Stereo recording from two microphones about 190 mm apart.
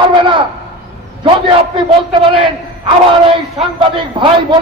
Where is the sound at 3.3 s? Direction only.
25° right (ahead or behind).